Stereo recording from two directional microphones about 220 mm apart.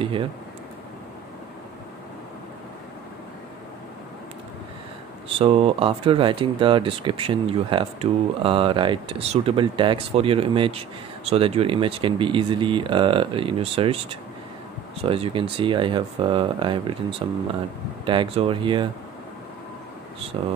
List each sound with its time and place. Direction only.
0.0 s speech: 25° right (ahead or behind)
5.4 s speech: 25° right (ahead or behind)
15.0 s speech: 25° right (ahead or behind)
18.0 s speech: 25° right (ahead or behind)